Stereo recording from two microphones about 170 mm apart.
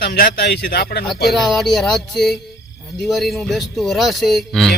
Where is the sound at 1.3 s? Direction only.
Centre (ahead or behind).